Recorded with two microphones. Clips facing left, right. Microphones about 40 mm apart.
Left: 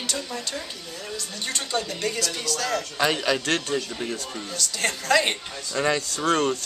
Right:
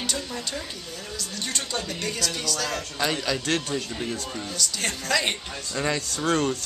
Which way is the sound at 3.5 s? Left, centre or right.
Centre.